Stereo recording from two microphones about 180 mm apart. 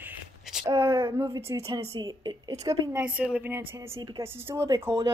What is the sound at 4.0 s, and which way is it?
Speech, 25° right (ahead or behind).